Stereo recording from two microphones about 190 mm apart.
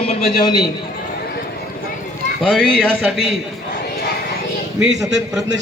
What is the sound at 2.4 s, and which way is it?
Speech, 5° left (ahead or behind).